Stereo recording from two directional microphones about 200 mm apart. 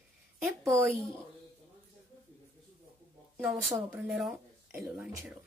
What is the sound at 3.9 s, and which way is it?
Speech, 5° right (ahead or behind).